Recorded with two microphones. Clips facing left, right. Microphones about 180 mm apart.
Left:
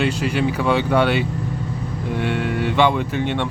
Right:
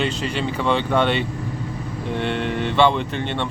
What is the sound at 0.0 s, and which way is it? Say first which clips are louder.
Speech: left 3 dB; 10° left (ahead or behind).